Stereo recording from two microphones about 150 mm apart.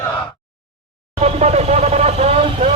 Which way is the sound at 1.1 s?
45° right (ahead or behind).